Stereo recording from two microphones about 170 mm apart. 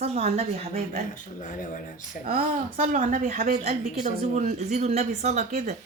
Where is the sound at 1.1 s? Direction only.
50° left (ahead or behind).